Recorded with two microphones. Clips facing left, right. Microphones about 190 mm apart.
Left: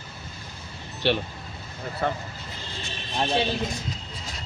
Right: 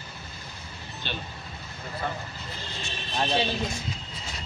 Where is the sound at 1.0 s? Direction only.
70° left (ahead or behind).